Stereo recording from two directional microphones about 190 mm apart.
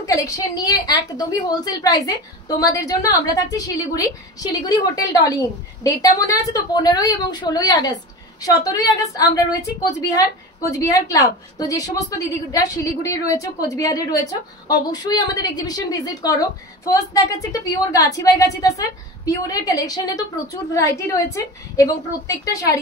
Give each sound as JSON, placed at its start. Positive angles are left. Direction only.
{"t": 0.0, "sound": "a woman's voice", "side_deg": 15}